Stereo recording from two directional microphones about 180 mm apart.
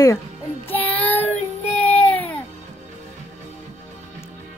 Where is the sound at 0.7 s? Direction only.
10° left (ahead or behind).